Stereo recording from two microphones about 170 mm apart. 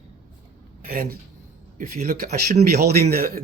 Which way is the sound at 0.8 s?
55° right (ahead or behind).